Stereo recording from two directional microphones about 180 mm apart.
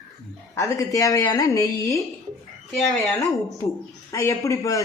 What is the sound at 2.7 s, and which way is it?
Speech, centre (ahead or behind).